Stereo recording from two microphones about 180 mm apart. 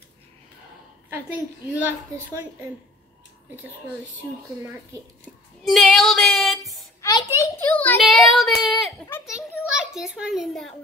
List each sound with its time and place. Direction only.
1.1 s a woman's voice: 10° right (ahead or behind)
5.6 s female singing: centre (ahead or behind)
7.0 s a sound: 20° left (ahead or behind)
8.4 s child singing: centre (ahead or behind)
9.7 s a child's voice: 5° right (ahead or behind)